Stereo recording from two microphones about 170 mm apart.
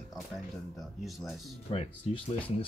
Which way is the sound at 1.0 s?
Centre (ahead or behind).